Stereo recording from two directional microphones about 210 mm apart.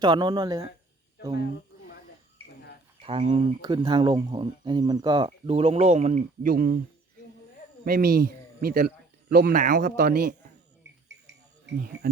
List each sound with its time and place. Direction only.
0.0 s speech: 20° right (ahead or behind)
3.0 s speech: 25° right (ahead or behind); by 6.7 s 45° right (ahead or behind)
7.9 s a man's voice: 45° right (ahead or behind)
11.3 s a sound: 50° right (ahead or behind)